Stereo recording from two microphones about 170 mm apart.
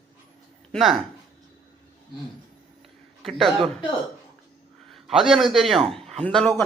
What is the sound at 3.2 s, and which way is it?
Speech, centre (ahead or behind).